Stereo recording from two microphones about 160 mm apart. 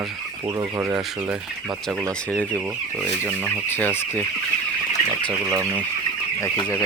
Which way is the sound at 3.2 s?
10° left (ahead or behind).